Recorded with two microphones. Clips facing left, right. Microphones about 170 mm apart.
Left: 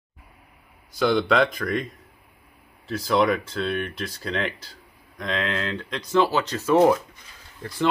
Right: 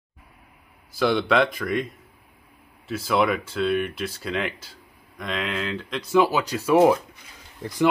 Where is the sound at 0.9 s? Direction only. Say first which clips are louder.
Even; centre (ahead or behind).